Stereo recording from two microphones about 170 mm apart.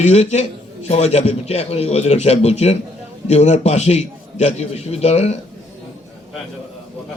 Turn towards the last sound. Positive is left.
turn(degrees=40)  # may be behind; listen again after turning